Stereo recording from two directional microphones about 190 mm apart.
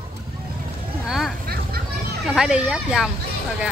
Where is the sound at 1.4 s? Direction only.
55° right (ahead or behind).